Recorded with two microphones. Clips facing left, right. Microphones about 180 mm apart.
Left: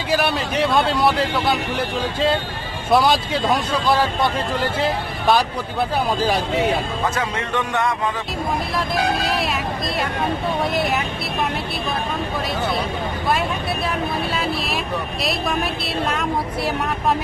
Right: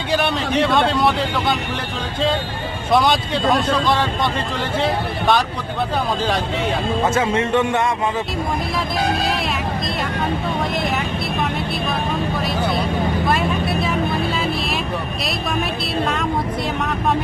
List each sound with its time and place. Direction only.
0.1 s a man's voice: 5° left (ahead or behind)
2.9 s a man's voice: 5° left (ahead or behind)
7.0 s speech: 25° right (ahead or behind)